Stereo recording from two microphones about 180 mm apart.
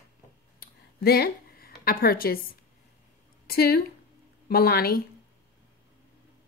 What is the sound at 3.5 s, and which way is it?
A woman's voice, 60° left (ahead or behind).